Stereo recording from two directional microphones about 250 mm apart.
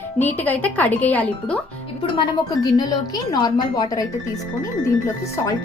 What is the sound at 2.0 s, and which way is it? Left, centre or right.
A woman's voice, left.